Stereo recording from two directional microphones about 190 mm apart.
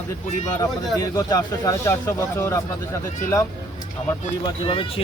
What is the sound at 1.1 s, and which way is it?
Speech, 20° left (ahead or behind).